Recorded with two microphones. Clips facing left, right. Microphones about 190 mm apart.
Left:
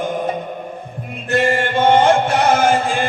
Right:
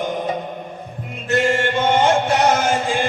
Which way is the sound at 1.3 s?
55° left (ahead or behind).